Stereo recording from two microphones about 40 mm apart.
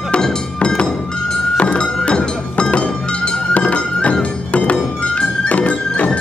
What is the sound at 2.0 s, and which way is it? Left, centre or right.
Music, left.